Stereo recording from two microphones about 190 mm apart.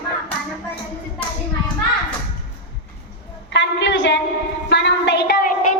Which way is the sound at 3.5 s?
65° left (ahead or behind).